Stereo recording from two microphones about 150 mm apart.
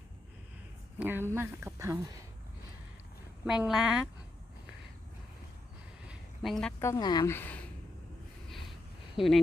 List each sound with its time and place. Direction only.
0.9 s speech: 15° right (ahead or behind)
3.4 s a woman's voice: 5° right (ahead or behind)
6.1 s a sound: centre (ahead or behind)
6.7 s speech: 20° left (ahead or behind)
7.3 s speech: 15° left (ahead or behind)
8.4 s a sound: centre (ahead or behind)
9.1 s speech: centre (ahead or behind)